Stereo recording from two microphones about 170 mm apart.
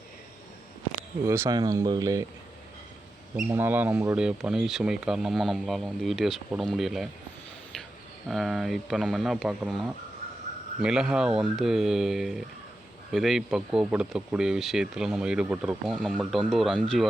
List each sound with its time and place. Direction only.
1.2 s speech: 15° right (ahead or behind)
3.3 s speech: 10° right (ahead or behind)
8.3 s speech: centre (ahead or behind)